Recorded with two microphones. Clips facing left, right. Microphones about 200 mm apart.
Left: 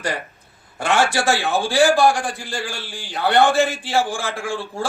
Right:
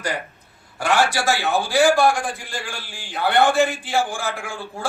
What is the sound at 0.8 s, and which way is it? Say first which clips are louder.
A man's voice: left 1 dB; 25° left (ahead or behind).